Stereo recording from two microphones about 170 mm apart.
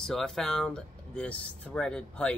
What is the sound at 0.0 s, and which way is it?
Speech, centre (ahead or behind).